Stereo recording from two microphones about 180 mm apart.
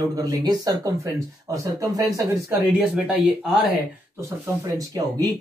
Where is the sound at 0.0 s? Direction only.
20° right (ahead or behind).